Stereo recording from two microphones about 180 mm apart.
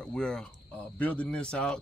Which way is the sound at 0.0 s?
5° left (ahead or behind).